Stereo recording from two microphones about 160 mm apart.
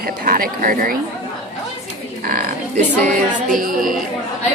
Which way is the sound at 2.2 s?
65° right (ahead or behind).